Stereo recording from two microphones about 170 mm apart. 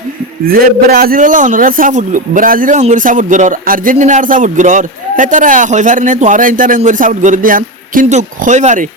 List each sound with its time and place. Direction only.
0.4 s a man's voice: 60° right (ahead or behind)